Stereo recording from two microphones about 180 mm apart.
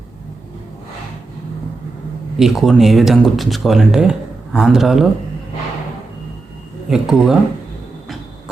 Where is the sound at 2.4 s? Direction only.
Centre (ahead or behind).